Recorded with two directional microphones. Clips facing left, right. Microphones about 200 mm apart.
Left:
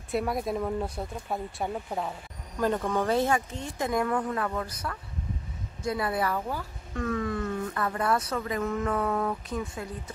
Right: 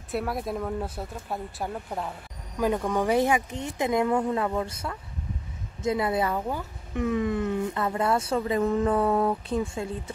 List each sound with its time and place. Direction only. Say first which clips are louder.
0.1 s speech: left 1 dB; centre (ahead or behind)
2.6 s a woman's voice: right 2 dB; 10° right (ahead or behind); by 10.1 s 25° right (ahead or behind)